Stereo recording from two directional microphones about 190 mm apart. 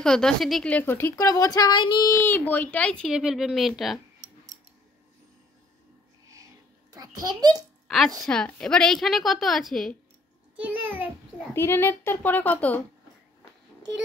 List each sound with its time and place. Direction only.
0.0 s a woman's voice: 5° left (ahead or behind); by 2.1 s 25° left (ahead or behind)
2.1 s speech: 10° left (ahead or behind)
6.3 s a sound: 15° right (ahead or behind)
8.2 s speech: 5° left (ahead or behind)
10.5 s a sound: 5° right (ahead or behind)
11.5 s a woman's voice: 10° left (ahead or behind)